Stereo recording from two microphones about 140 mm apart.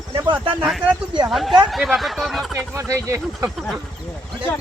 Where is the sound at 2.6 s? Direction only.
20° right (ahead or behind).